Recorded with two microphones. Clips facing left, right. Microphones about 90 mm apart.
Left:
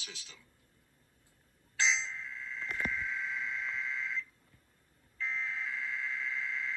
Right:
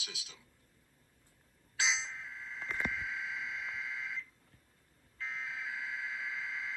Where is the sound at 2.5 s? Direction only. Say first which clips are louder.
Left 1 dB; 10° right (ahead or behind).